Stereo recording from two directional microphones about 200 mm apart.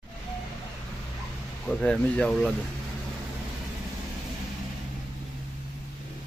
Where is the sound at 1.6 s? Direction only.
5° left (ahead or behind).